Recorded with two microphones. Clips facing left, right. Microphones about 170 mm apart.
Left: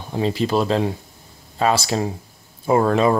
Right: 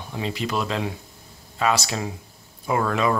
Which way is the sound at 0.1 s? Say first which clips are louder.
Left 7 dB; 35° left (ahead or behind).